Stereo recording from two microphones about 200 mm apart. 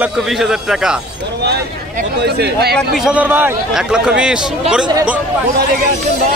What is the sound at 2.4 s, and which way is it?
Speech, 55° right (ahead or behind).